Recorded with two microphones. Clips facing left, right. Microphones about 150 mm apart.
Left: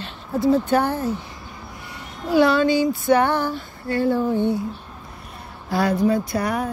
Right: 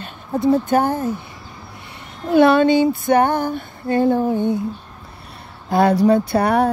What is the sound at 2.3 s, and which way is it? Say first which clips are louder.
Music: right 4 dB; 55° right (ahead or behind).